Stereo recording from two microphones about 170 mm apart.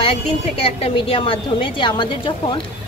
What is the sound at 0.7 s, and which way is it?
A woman's voice, 35° left (ahead or behind).